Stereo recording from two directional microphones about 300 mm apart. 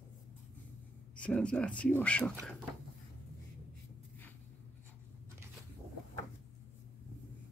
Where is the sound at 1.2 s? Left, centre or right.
Centre.